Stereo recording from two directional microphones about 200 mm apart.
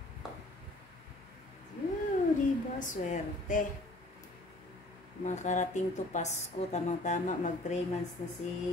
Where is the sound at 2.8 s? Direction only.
40° left (ahead or behind).